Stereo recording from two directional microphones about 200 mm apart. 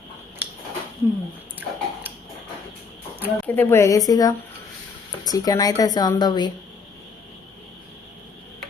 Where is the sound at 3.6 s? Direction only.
10° left (ahead or behind).